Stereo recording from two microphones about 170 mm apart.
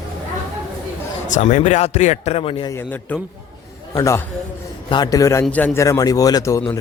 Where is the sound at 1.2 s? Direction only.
45° left (ahead or behind).